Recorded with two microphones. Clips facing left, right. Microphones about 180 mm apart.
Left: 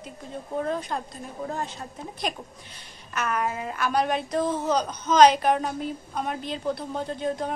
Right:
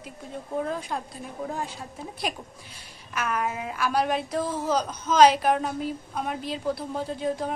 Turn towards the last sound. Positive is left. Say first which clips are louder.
# even
turn(degrees=-5)  # may be behind; listen again after turning